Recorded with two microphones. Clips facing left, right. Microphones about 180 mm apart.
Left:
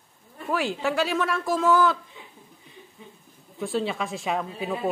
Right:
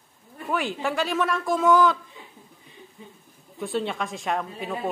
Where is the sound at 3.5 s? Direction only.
Centre (ahead or behind).